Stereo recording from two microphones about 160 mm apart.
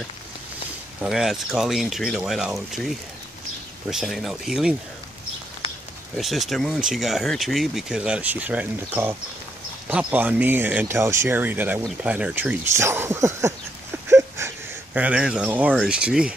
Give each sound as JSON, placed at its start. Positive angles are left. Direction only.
{"t": 1.0, "sound": "speech", "side_deg": -5}
{"t": 6.1, "sound": "speech", "side_deg": 0}
{"t": 14.0, "sound": "a sound", "side_deg": -15}
{"t": 15.0, "sound": "speech", "side_deg": -5}